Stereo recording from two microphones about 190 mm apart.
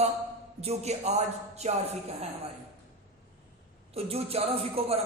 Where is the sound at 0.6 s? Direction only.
35° right (ahead or behind).